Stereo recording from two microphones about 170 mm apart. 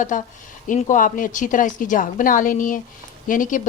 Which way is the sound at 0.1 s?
50° left (ahead or behind).